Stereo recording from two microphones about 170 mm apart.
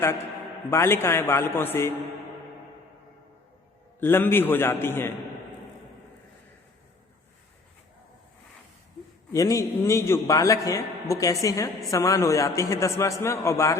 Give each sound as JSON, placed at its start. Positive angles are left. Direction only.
{"t": 0.7, "sound": "a man's voice", "side_deg": 15}
{"t": 4.0, "sound": "a man's voice", "side_deg": 15}
{"t": 9.3, "sound": "a man's voice", "side_deg": 20}